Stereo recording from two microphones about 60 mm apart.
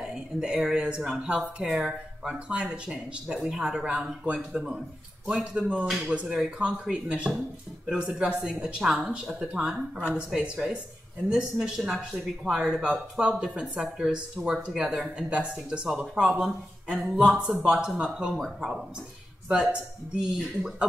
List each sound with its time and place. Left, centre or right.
0.0 s speech: centre
8.7 s speech: centre